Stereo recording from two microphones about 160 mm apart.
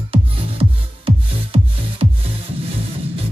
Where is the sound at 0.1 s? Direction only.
35° right (ahead or behind).